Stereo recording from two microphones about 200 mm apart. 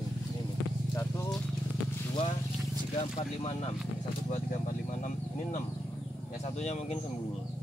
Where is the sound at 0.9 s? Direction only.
15° left (ahead or behind).